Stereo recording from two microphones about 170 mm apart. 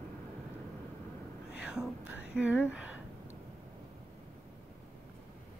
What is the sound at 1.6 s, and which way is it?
Speech, 5° right (ahead or behind).